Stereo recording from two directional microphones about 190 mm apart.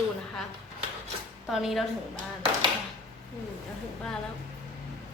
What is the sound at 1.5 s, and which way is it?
Speech, centre (ahead or behind).